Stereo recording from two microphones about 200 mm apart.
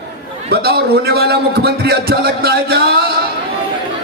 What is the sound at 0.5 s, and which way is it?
A man's voice, 50° right (ahead or behind).